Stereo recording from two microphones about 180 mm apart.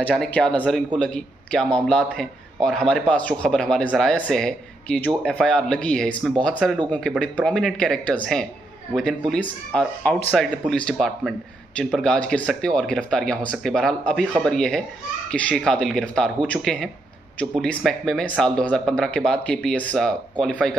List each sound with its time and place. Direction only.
0.0 s a man's voice: 5° left (ahead or behind)